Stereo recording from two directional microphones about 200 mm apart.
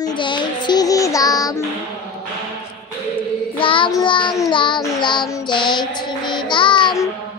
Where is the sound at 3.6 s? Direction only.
25° left (ahead or behind).